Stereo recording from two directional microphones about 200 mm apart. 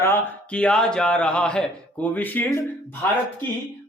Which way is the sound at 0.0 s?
10° left (ahead or behind).